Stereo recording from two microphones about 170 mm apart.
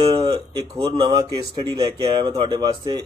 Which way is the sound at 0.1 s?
25° right (ahead or behind).